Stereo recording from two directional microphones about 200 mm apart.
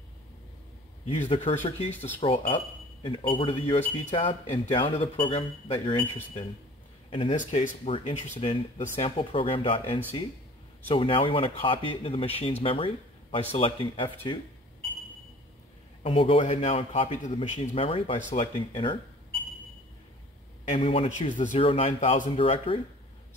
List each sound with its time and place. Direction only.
1.0 s speech: 25° left (ahead or behind)
7.1 s speech: 25° left (ahead or behind)
16.0 s speech: 25° left (ahead or behind)
20.6 s speech: 30° left (ahead or behind)